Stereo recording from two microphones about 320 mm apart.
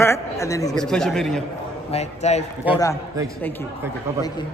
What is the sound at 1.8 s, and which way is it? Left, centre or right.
Speech, centre.